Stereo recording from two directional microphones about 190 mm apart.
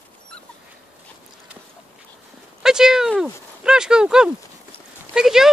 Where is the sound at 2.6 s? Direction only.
5° right (ahead or behind).